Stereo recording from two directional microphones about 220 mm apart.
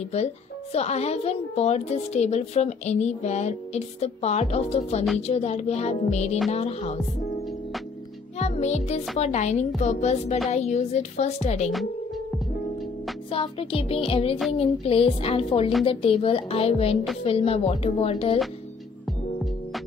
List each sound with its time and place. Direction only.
0.7 s a woman's voice: 30° left (ahead or behind)
8.4 s music: 30° left (ahead or behind)
10.5 s a woman's voice: 30° left (ahead or behind)
13.3 s a woman's voice: 25° left (ahead or behind)